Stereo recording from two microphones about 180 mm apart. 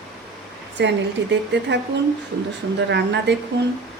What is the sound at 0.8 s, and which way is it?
Speech, 80° right.